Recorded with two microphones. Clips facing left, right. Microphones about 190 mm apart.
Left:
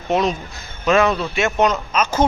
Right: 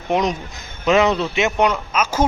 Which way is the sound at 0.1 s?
15° right (ahead or behind).